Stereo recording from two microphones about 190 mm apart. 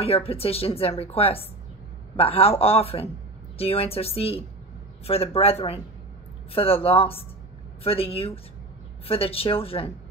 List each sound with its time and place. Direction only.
0.0 s a woman's voice: 30° left (ahead or behind)